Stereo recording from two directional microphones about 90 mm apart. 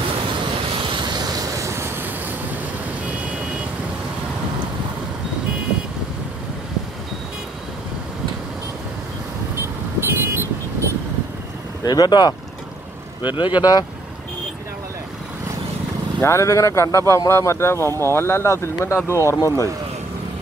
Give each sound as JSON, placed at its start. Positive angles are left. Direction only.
{"t": 0.8, "sound": "vehicle", "side_deg": -55}
{"t": 9.6, "sound": "vehicle", "side_deg": -25}
{"t": 11.8, "sound": "speech", "side_deg": 50}
{"t": 16.2, "sound": "speech", "side_deg": 30}